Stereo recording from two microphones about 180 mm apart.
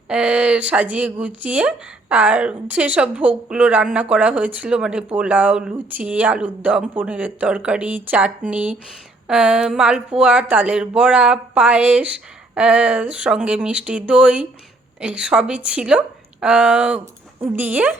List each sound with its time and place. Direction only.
0.1 s a woman's voice: 5° right (ahead or behind)